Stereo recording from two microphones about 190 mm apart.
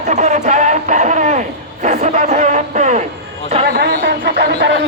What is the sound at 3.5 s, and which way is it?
A man's voice, 50° right (ahead or behind).